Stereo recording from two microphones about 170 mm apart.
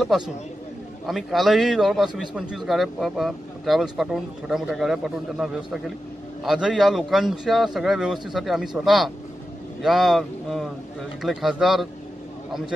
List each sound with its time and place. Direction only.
1.0 s a man's voice: centre (ahead or behind)